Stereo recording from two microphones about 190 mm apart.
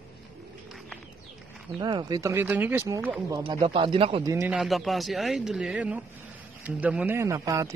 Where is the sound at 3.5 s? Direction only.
25° right (ahead or behind).